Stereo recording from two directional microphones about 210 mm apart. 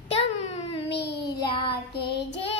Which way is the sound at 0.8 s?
50° left (ahead or behind).